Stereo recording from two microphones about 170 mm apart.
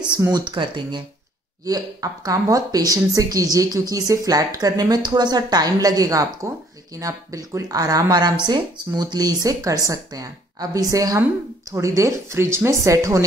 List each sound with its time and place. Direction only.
0.2 s speech: 25° right (ahead or behind)